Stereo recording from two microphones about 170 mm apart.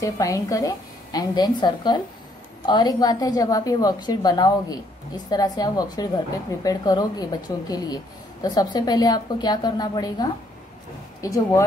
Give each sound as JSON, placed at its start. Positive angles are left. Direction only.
{"t": 0.0, "sound": "a woman's voice", "side_deg": 20}